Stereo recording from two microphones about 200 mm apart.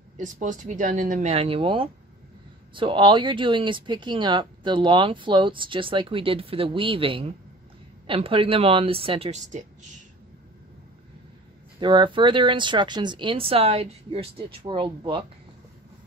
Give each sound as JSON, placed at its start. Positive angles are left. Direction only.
{"t": 0.2, "sound": "speech", "side_deg": -40}
{"t": 11.8, "sound": "speech", "side_deg": -25}